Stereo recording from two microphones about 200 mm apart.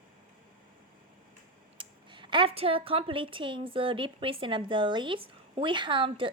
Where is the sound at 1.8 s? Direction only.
25° right (ahead or behind).